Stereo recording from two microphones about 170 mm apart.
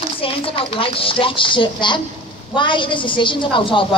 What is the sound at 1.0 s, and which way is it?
A woman's voice, 30° left (ahead or behind).